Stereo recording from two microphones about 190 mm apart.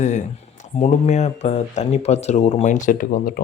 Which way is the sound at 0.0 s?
40° left (ahead or behind).